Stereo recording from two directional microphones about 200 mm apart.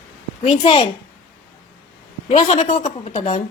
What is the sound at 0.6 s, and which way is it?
Speech, 30° left (ahead or behind).